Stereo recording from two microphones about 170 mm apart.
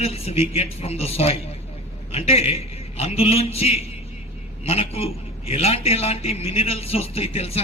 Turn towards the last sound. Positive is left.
turn(degrees=35)  # may be behind; listen again after turning